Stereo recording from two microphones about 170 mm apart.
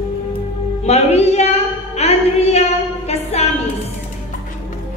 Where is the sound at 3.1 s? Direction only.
40° left (ahead or behind).